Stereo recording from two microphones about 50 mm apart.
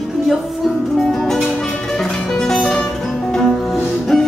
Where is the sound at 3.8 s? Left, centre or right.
Centre.